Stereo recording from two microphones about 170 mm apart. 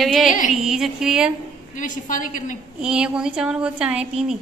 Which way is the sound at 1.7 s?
50° left (ahead or behind).